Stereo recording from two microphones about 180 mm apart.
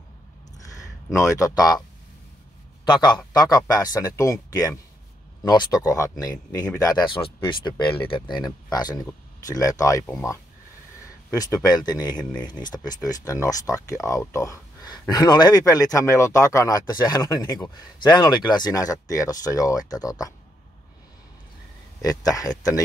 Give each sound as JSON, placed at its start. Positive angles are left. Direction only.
{"t": 0.7, "sound": "speech", "side_deg": 15}
{"t": 2.8, "sound": "a man's voice", "side_deg": 25}
{"t": 11.2, "sound": "speech", "side_deg": 20}
{"t": 22.0, "sound": "speech", "side_deg": 20}